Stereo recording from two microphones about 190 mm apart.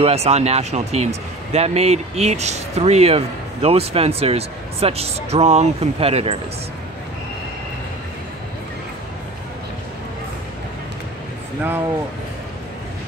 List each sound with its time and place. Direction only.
0.0 s speech: 35° right (ahead or behind)